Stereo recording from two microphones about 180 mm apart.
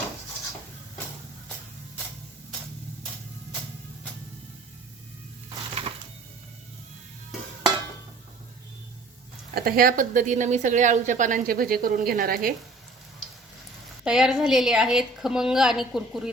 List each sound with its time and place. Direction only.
5.5 s music: 30° right (ahead or behind)
9.6 s a woman's voice: 55° right (ahead or behind)
14.0 s a woman's voice: 5° right (ahead or behind)